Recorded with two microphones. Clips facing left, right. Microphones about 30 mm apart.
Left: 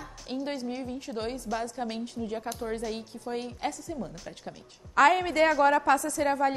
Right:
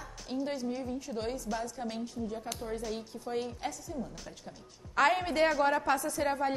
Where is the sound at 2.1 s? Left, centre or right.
Left.